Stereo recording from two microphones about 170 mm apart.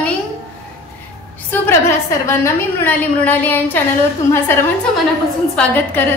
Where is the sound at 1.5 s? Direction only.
15° left (ahead or behind).